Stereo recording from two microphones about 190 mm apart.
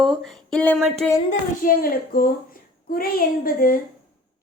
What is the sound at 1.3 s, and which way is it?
A woman's voice, 50° left (ahead or behind).